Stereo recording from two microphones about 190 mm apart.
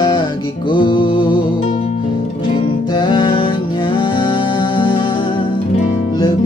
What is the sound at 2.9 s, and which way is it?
Music, 25° left (ahead or behind).